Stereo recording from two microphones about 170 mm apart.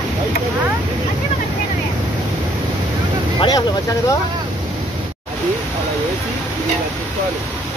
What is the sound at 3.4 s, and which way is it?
Vehicle, 20° left (ahead or behind).